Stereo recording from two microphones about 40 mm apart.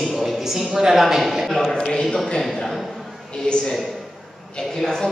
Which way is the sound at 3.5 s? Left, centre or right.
Left.